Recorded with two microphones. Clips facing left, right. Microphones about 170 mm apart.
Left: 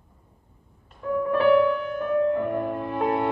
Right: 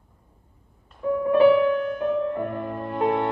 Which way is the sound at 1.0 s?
20° right (ahead or behind).